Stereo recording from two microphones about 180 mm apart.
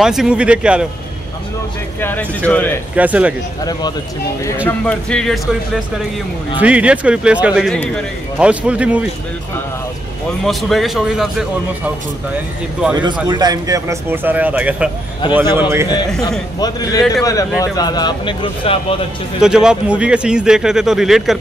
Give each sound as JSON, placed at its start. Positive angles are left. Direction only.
{"t": 0.0, "sound": "speech", "side_deg": -5}
{"t": 2.0, "sound": "speech", "side_deg": 10}
{"t": 3.0, "sound": "speech", "side_deg": -10}
{"t": 4.6, "sound": "speech", "side_deg": 5}
{"t": 6.6, "sound": "speech", "side_deg": -5}
{"t": 8.4, "sound": "speech", "side_deg": -5}
{"t": 10.4, "sound": "speech", "side_deg": 0}
{"t": 13.0, "sound": "speech", "side_deg": -25}
{"t": 16.1, "sound": "speech", "side_deg": 0}
{"t": 16.5, "sound": "speech", "side_deg": 20}
{"t": 19.4, "sound": "speech", "side_deg": -5}